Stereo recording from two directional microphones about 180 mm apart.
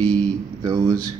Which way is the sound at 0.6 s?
20° right (ahead or behind).